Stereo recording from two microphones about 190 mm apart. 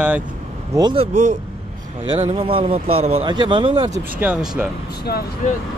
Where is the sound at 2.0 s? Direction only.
30° right (ahead or behind).